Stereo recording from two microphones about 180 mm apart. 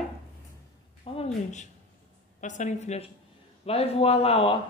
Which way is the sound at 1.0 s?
35° left (ahead or behind).